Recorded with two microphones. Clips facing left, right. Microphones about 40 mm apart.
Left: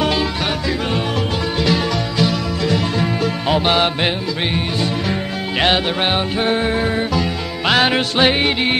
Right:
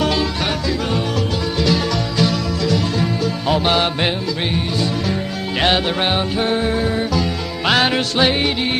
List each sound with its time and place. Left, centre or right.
0.0 s music: centre
2.6 s music: left
5.6 s music: centre
7.6 s music: centre
7.9 s music: left